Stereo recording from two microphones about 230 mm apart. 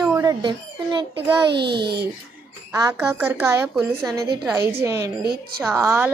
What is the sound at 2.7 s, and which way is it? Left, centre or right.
A woman's voice, centre.